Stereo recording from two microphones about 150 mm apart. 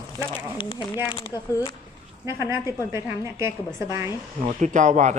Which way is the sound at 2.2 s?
15° right (ahead or behind).